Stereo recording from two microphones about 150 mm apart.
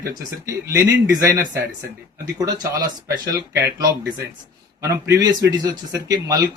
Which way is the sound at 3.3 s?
25° right (ahead or behind).